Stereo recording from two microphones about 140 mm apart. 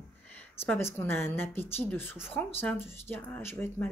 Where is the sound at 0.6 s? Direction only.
15° left (ahead or behind).